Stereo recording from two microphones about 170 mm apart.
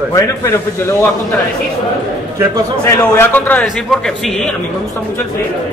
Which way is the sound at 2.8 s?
15° left (ahead or behind).